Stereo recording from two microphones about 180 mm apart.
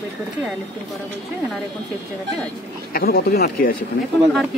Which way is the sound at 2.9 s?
60° left (ahead or behind).